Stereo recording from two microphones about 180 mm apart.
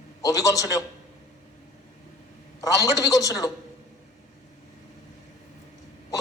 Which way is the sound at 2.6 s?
20° left (ahead or behind).